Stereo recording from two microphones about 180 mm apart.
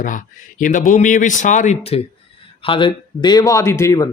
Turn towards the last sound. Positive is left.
turn(degrees=15)  # may be behind; listen again after turning